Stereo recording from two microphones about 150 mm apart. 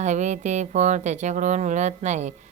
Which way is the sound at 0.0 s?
50° right (ahead or behind).